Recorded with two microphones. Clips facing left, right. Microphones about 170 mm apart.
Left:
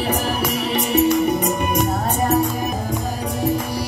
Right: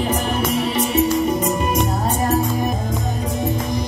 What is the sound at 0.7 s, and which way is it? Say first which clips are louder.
Music: left 3 dB; 70° left (ahead or behind).